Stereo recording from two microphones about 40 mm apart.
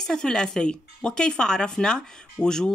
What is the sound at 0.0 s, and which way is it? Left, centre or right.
Speech, centre.